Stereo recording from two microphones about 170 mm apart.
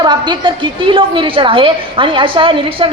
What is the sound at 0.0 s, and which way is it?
A woman's voice, 25° right (ahead or behind).